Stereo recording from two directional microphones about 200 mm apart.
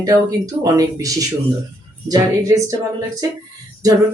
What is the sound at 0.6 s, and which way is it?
Speech, 15° right (ahead or behind).